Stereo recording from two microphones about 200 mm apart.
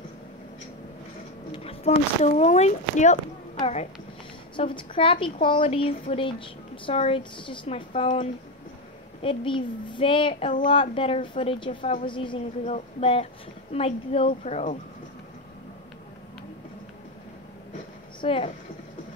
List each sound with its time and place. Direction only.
1.5 s speech: 30° left (ahead or behind)
4.6 s a woman's voice: 25° left (ahead or behind)
18.2 s a woman's voice: 25° left (ahead or behind)